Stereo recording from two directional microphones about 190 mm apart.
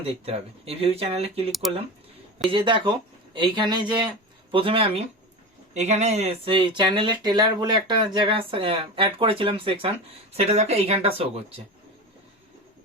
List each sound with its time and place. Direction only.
0.0 s speech: 30° right (ahead or behind)